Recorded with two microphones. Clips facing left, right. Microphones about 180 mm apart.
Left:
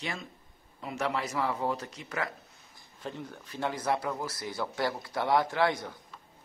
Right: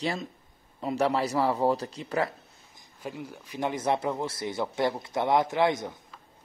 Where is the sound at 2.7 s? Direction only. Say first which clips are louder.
Right 2 dB; 10° right (ahead or behind).